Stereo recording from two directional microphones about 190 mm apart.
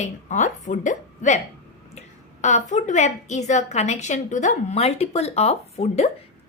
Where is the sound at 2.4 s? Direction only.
40° left (ahead or behind).